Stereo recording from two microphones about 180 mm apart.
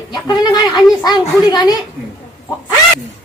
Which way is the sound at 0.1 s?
20° left (ahead or behind).